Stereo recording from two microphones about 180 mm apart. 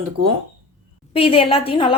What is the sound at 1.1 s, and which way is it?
Speech, 30° left (ahead or behind).